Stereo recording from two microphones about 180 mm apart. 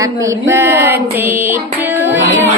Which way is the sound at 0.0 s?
20° right (ahead or behind).